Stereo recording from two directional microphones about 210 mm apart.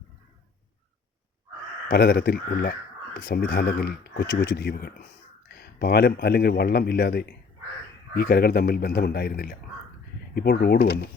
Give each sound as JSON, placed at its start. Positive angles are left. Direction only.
{"t": 1.9, "sound": "a man's voice", "side_deg": 50}